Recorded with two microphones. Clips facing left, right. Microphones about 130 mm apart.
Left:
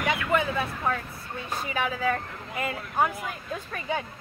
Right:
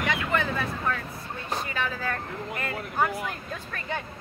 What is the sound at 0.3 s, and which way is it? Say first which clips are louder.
Speech: left 2 dB; 15° left (ahead or behind).